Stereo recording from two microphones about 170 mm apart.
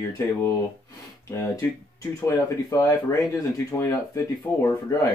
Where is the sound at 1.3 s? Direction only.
15° left (ahead or behind).